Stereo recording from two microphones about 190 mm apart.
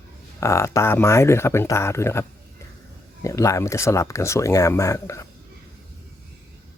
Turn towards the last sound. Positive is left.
turn(degrees=15)  # may be behind; listen again after turning